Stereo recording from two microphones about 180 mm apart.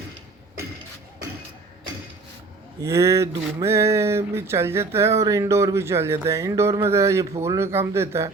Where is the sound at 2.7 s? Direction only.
15° right (ahead or behind).